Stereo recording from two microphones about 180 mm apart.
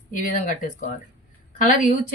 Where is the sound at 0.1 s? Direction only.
45° left (ahead or behind).